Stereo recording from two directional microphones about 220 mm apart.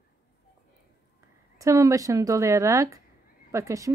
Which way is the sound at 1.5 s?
15° right (ahead or behind).